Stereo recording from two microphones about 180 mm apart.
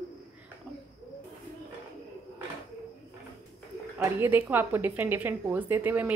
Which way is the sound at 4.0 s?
10° right (ahead or behind).